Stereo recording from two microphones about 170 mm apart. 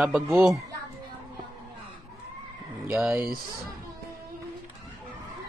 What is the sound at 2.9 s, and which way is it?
Speech, 10° right (ahead or behind).